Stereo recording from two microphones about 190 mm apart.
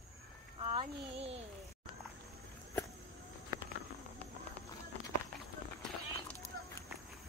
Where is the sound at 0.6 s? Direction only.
30° right (ahead or behind).